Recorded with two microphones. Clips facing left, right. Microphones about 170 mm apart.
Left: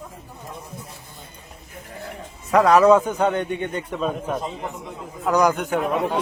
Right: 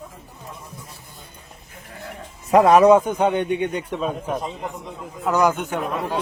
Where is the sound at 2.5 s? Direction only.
25° right (ahead or behind).